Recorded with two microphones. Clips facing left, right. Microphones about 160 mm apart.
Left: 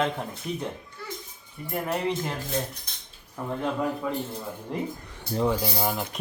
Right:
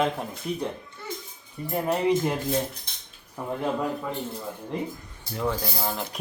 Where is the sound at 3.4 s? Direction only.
10° right (ahead or behind).